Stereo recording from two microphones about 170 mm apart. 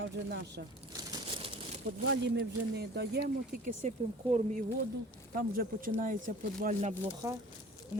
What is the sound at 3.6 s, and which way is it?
Speech, 45° right (ahead or behind).